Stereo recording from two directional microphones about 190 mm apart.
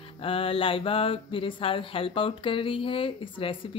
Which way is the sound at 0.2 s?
30° left (ahead or behind).